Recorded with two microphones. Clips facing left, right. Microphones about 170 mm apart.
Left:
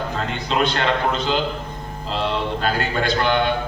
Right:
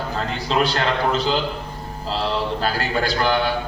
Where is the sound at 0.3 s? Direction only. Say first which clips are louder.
Right 1 dB; 35° right (ahead or behind).